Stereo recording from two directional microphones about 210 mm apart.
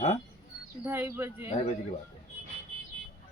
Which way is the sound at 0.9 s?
10° right (ahead or behind).